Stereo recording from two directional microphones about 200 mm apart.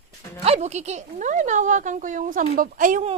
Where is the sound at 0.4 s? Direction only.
35° right (ahead or behind).